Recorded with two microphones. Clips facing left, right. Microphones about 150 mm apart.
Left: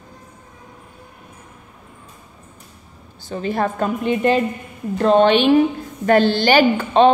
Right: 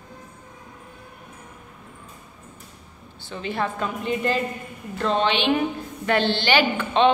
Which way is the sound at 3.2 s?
40° left (ahead or behind).